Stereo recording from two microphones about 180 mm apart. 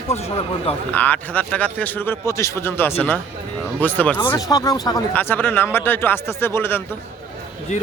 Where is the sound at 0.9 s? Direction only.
10° left (ahead or behind).